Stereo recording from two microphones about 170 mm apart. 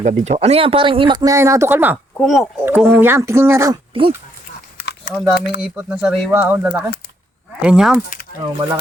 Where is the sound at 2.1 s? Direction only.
Centre (ahead or behind).